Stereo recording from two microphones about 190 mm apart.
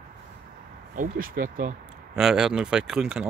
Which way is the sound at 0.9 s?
45° right (ahead or behind).